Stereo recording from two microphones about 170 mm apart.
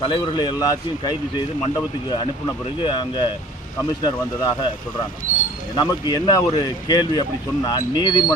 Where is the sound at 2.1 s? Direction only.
25° left (ahead or behind).